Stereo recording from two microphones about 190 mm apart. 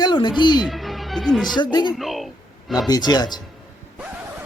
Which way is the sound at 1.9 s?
Centre (ahead or behind).